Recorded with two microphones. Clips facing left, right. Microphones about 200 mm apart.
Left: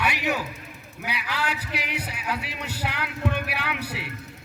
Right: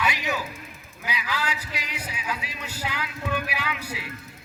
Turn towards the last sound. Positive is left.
turn(degrees=65)  # may be behind; listen again after turning